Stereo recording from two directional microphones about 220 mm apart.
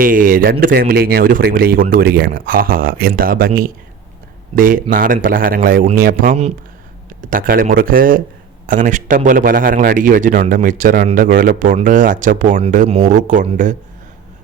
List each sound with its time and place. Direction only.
0.0 s a man's voice: 40° right (ahead or behind)